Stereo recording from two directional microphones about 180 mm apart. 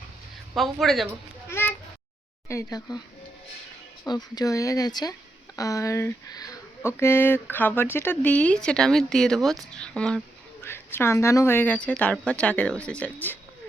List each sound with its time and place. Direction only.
0.5 s speech: centre (ahead or behind)
1.5 s a sound: 15° left (ahead or behind)
2.5 s speech: 20° left (ahead or behind)
4.0 s speech: 20° left (ahead or behind)